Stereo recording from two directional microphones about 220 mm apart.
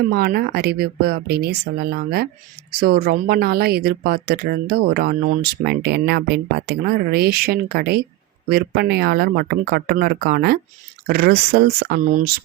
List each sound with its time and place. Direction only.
0.0 s speech: 45° right (ahead or behind)